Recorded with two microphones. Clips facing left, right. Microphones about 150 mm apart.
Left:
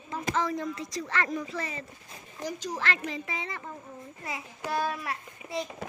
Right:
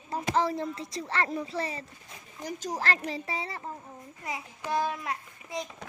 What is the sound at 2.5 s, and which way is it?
A woman's voice, 45° right (ahead or behind).